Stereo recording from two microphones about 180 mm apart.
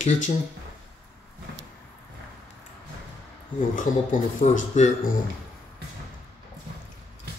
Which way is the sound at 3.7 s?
45° left (ahead or behind).